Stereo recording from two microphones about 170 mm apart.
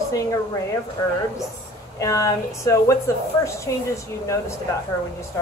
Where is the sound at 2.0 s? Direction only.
20° left (ahead or behind).